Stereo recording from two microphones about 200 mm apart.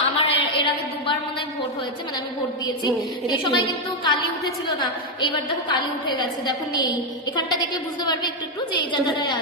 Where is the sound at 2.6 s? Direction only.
20° left (ahead or behind).